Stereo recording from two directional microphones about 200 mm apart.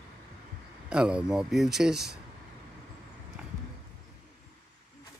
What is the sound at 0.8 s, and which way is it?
Speech, 5° right (ahead or behind).